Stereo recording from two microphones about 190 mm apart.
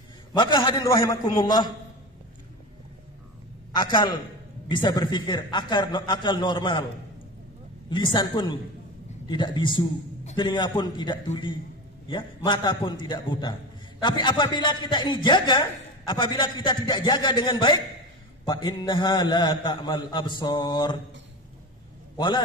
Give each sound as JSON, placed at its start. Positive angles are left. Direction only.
{"t": 0.3, "sound": "a man's voice", "side_deg": 25}
{"t": 3.7, "sound": "a man's voice", "side_deg": 25}
{"t": 7.9, "sound": "a man's voice", "side_deg": 25}
{"t": 22.1, "sound": "a man's voice", "side_deg": 25}